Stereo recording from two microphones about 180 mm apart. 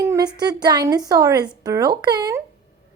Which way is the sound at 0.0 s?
20° right (ahead or behind).